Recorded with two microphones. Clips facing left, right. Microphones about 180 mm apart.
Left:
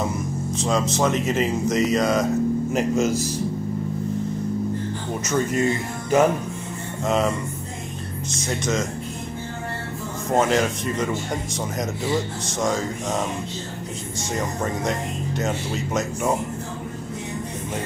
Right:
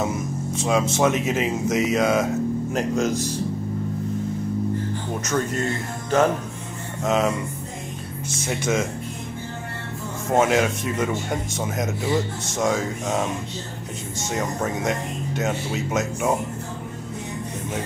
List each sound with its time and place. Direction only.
0.9 s speech: 5° right (ahead or behind)
5.3 s speech: 5° left (ahead or behind)
7.0 s speech: centre (ahead or behind)
8.5 s speech: 10° right (ahead or behind)
10.3 s speech: 5° right (ahead or behind)
14.3 s speech: 5° right (ahead or behind)